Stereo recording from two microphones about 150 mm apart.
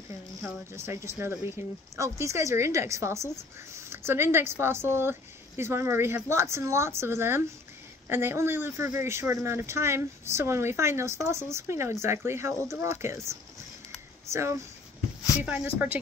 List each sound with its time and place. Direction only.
0.7 s a woman's voice: 20° right (ahead or behind)